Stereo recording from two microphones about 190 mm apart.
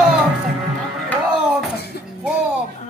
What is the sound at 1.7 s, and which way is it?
Music, 60° left (ahead or behind).